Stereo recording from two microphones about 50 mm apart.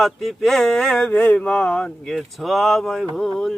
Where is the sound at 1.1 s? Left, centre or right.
Left.